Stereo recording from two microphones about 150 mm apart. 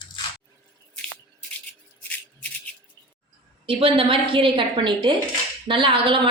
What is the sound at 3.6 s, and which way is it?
A woman's voice, 35° right (ahead or behind).